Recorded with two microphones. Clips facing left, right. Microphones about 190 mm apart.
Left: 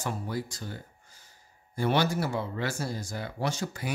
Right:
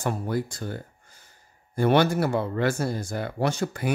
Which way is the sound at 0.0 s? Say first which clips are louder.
Right 6 dB; 55° right (ahead or behind).